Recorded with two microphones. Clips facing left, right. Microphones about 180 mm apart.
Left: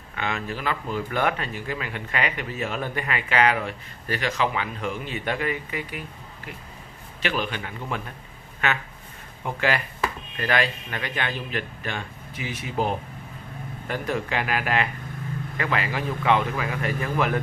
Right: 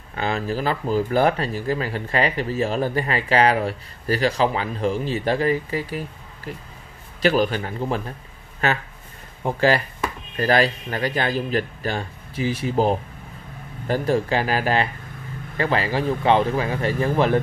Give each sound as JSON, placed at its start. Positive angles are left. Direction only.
{"t": 0.1, "sound": "speech", "side_deg": -35}